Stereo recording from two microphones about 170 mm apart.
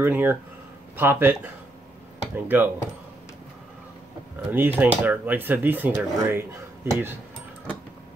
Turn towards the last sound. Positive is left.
turn(degrees=-15)  # may be behind; listen again after turning